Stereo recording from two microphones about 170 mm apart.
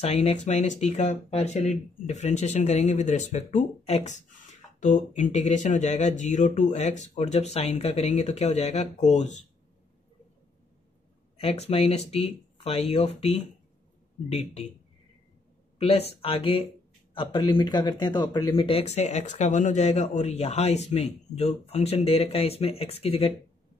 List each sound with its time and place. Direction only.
0.0 s speech: 40° left (ahead or behind)
11.4 s speech: 35° left (ahead or behind)
15.8 s speech: 35° left (ahead or behind)